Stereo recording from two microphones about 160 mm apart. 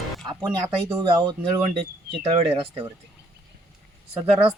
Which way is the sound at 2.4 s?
35° right (ahead or behind).